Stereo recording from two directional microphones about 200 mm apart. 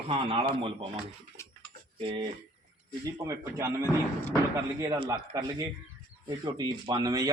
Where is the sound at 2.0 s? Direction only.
25° right (ahead or behind).